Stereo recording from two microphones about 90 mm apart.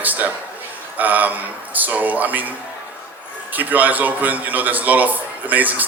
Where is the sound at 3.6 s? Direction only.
20° right (ahead or behind).